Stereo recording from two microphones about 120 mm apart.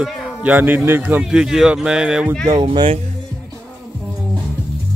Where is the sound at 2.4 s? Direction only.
40° right (ahead or behind).